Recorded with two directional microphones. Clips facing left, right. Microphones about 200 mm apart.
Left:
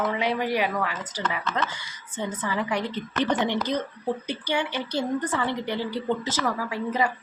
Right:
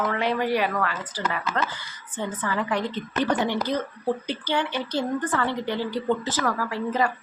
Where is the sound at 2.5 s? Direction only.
10° left (ahead or behind).